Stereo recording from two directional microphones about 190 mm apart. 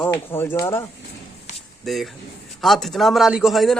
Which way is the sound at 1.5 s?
40° left (ahead or behind).